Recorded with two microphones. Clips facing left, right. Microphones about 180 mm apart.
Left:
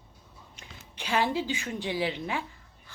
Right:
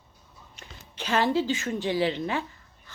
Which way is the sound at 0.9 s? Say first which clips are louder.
Right 3 dB; 10° left (ahead or behind).